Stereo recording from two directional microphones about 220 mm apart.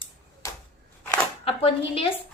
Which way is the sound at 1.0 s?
10° left (ahead or behind).